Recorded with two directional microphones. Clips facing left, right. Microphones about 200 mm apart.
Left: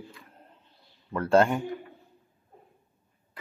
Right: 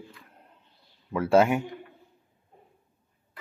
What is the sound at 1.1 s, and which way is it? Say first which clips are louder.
Speech: right 1 dB; 5° right (ahead or behind).